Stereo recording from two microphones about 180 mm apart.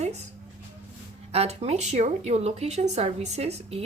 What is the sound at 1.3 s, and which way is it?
A woman's voice, 35° right (ahead or behind).